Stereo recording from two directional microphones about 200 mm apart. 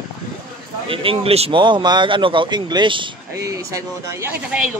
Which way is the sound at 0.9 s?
25° right (ahead or behind).